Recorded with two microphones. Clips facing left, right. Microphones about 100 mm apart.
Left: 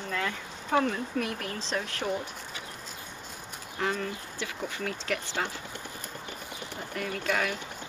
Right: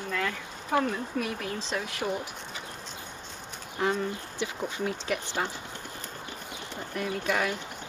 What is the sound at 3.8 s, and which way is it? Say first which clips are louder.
Speech: right 3 dB; 20° right (ahead or behind).